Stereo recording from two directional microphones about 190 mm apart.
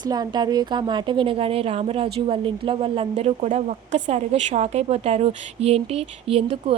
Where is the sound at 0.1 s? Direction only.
20° right (ahead or behind).